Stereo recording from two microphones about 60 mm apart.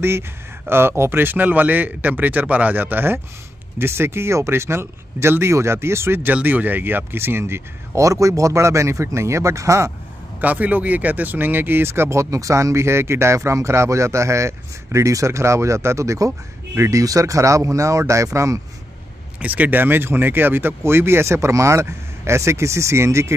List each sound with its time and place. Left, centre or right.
0.7 s speech: right
6.3 s speech: right
8.0 s speech: right
10.4 s speech: right
17.0 s speech: right
19.4 s speech: right